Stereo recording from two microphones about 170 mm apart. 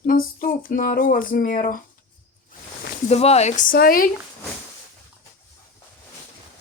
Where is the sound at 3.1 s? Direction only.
40° left (ahead or behind); by 4.1 s 60° left (ahead or behind).